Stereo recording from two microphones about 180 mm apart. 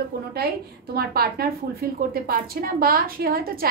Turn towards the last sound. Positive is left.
turn(degrees=-55)  # may be behind; listen again after turning